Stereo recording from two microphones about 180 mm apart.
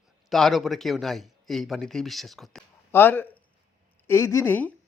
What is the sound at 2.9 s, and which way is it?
Speech, 10° left (ahead or behind).